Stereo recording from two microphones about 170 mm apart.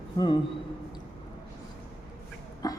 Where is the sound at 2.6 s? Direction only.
20° left (ahead or behind).